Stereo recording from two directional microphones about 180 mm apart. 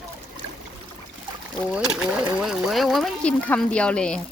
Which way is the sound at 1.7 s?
5° right (ahead or behind).